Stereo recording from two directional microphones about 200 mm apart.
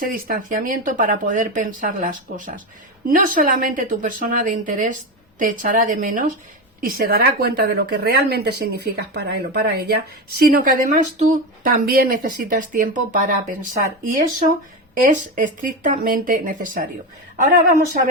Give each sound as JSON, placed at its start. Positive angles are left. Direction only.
{"t": 0.1, "sound": "a woman's voice", "side_deg": -45}
{"t": 15.0, "sound": "speech", "side_deg": -40}